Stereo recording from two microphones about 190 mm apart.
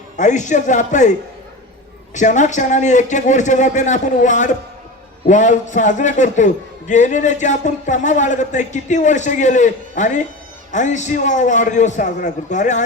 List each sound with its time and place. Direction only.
0.2 s a man's voice: 40° left (ahead or behind)
2.1 s a man's voice: 40° left (ahead or behind)